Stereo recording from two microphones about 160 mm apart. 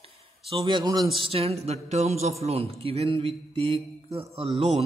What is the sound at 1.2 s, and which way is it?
Mantra, 35° right (ahead or behind).